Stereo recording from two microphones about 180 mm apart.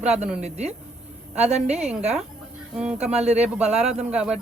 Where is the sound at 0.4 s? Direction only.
35° right (ahead or behind).